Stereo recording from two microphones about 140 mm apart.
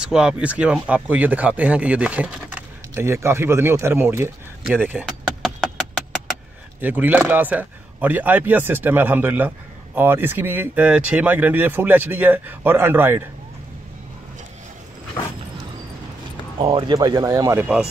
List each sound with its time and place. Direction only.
0.0 s speech: 5° right (ahead or behind)
5.0 s a sound: 5° left (ahead or behind)
6.8 s speech: 15° right (ahead or behind)
16.5 s speech: 35° right (ahead or behind)